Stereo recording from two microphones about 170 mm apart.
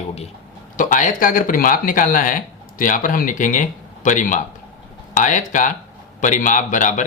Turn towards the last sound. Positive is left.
turn(degrees=45)  # may be behind; listen again after turning